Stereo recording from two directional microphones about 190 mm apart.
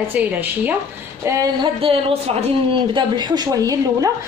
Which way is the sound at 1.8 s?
30° right (ahead or behind).